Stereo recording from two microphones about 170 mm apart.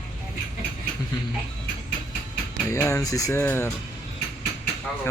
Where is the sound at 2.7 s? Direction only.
15° left (ahead or behind).